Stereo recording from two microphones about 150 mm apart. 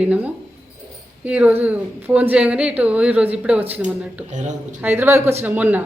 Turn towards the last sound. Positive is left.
turn(degrees=-10)  # may be behind; listen again after turning